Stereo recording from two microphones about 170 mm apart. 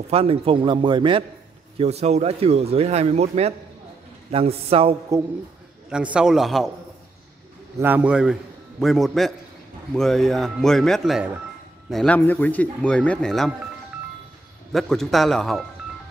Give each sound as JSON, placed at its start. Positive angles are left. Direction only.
{"t": 0.1, "sound": "a man's voice", "side_deg": -35}
{"t": 5.9, "sound": "a man's voice", "side_deg": -5}
{"t": 7.8, "sound": "a man's voice", "side_deg": -10}
{"t": 14.7, "sound": "a man's voice", "side_deg": 0}